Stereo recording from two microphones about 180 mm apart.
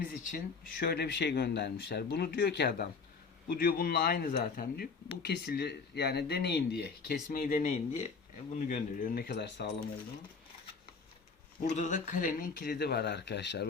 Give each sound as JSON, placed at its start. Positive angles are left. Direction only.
{"t": 0.0, "sound": "speech", "side_deg": 50}
{"t": 5.2, "sound": "speech", "side_deg": 70}
{"t": 7.3, "sound": "speech", "side_deg": 45}
{"t": 11.7, "sound": "speech", "side_deg": 45}